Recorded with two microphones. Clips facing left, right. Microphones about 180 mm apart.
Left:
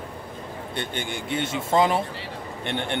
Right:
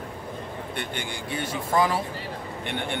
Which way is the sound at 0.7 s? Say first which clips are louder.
Left 4 dB; 25° left (ahead or behind).